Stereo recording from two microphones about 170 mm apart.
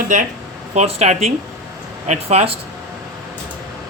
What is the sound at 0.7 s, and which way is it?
Speech, 40° right (ahead or behind).